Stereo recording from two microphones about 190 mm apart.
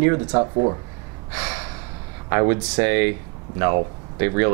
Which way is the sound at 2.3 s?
15° right (ahead or behind).